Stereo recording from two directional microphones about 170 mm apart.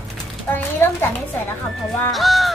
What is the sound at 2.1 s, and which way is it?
Honk, centre (ahead or behind).